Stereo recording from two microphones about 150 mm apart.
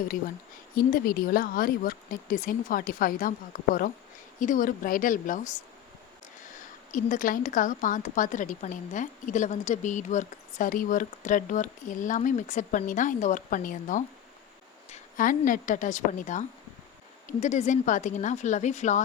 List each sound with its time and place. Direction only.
0.8 s speech: 75° left (ahead or behind)
4.4 s speech: 60° left (ahead or behind)
6.9 s a woman's voice: 60° left (ahead or behind)